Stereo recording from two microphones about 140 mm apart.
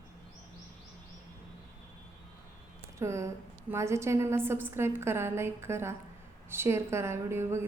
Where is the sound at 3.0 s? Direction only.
20° right (ahead or behind).